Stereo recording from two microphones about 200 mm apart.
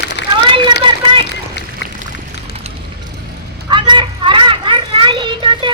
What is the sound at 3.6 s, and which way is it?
Vehicle, 25° right (ahead or behind).